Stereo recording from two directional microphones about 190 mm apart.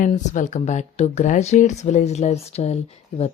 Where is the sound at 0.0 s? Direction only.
40° left (ahead or behind).